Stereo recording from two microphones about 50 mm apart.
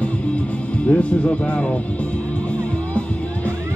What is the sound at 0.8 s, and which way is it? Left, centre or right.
Speech, left.